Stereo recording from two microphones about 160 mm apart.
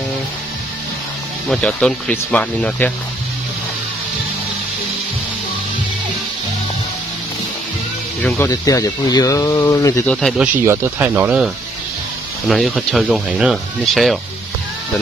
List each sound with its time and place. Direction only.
1.5 s speech: 5° left (ahead or behind)
8.5 s speech: 25° left (ahead or behind)
10.0 s speech: 5° left (ahead or behind)
10.4 s speech: 15° right (ahead or behind)
12.4 s speech: centre (ahead or behind)